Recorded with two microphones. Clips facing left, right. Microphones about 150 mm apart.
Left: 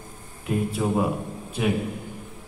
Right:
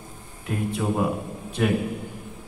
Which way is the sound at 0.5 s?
Centre (ahead or behind).